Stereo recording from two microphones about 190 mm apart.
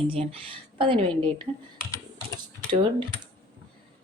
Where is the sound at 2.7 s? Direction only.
25° right (ahead or behind).